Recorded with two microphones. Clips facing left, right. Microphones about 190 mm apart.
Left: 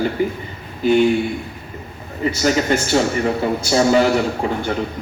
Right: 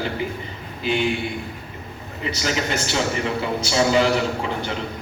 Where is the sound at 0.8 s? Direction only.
45° left (ahead or behind).